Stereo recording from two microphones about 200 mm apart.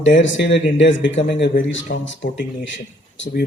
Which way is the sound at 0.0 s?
65° left (ahead or behind).